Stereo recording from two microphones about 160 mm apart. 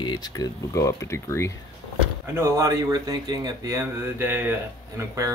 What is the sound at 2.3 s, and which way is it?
Speech, 15° right (ahead or behind).